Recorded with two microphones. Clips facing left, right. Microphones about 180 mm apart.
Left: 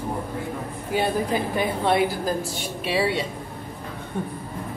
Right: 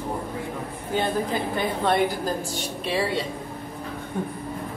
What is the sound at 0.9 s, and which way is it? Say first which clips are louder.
A woman's voice: left 2 dB; 10° left (ahead or behind).